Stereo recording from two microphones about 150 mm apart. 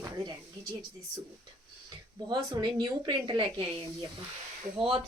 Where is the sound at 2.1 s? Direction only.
30° right (ahead or behind).